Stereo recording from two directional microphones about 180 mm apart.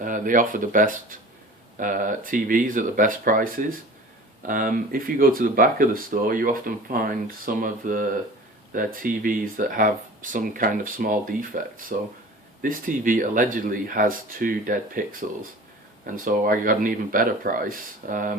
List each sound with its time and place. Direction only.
0.0 s speech: 45° right (ahead or behind)
16.0 s speech: 50° right (ahead or behind)